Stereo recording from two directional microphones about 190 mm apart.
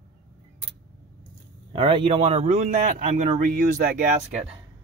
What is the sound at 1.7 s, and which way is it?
A man's voice, 25° right (ahead or behind).